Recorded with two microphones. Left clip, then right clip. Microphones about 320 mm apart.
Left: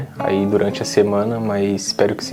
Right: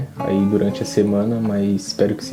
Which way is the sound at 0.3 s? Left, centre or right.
Left.